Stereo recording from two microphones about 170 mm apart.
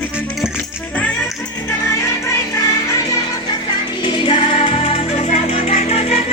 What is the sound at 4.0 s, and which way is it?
Music, 30° left (ahead or behind).